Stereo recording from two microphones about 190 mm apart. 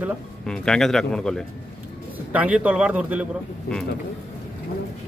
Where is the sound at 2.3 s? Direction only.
5° right (ahead or behind).